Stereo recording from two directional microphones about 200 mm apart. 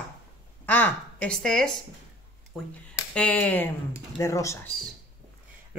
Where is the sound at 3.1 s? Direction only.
5° left (ahead or behind).